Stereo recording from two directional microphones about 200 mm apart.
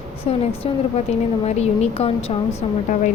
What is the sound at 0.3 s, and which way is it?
A woman's voice, 30° left (ahead or behind).